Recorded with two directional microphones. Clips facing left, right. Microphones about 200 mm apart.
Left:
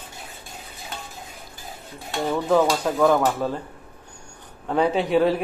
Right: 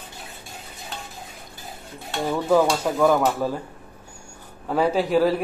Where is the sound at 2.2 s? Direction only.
5° right (ahead or behind).